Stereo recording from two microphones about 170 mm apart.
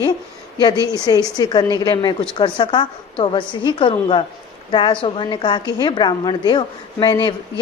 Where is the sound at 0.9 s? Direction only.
20° left (ahead or behind).